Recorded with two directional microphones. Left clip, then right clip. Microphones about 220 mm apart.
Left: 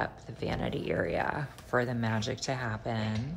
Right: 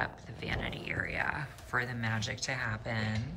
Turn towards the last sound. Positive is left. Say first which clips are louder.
# left 1 dB
turn(degrees=15)  # may be behind; listen again after turning